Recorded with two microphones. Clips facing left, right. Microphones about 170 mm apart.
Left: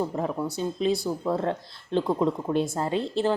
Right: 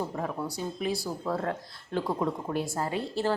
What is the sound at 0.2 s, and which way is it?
A woman's voice, 25° left (ahead or behind).